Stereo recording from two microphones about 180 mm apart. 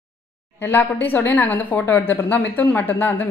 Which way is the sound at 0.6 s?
10° left (ahead or behind).